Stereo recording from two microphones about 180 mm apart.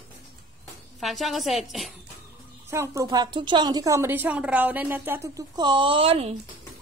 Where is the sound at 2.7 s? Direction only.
15° right (ahead or behind).